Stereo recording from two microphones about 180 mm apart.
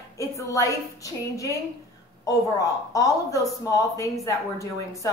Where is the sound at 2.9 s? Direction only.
20° left (ahead or behind).